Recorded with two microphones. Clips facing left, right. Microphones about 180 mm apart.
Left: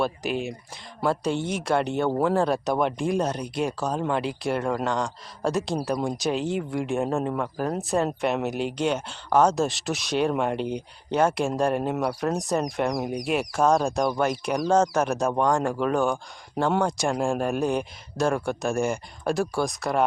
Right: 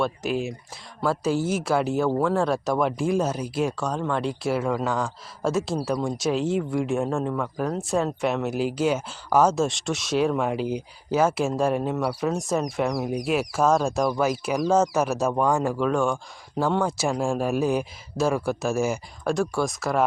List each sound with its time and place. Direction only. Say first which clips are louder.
0.0 s speech: right 1 dB; centre (ahead or behind)